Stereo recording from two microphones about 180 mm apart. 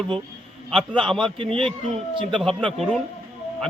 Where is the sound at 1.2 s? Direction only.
30° right (ahead or behind).